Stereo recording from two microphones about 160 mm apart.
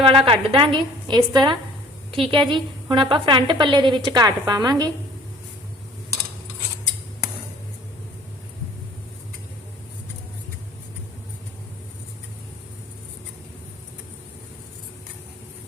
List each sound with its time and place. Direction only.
0.0 s a woman's voice: 35° right (ahead or behind)